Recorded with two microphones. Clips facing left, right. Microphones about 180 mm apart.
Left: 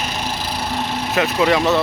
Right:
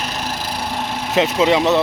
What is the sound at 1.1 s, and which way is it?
Speech, 20° right (ahead or behind).